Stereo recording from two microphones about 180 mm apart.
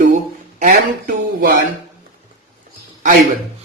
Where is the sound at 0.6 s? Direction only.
55° right (ahead or behind).